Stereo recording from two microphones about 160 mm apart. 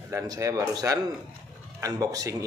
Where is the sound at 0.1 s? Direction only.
20° right (ahead or behind).